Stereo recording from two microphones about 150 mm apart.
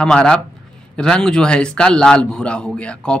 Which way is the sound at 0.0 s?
5° left (ahead or behind).